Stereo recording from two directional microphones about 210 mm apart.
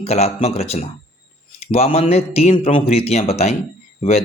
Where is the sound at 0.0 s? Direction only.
30° left (ahead or behind).